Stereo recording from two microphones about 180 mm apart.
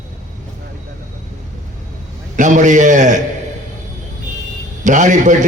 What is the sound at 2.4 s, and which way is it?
Speech, 45° right (ahead or behind).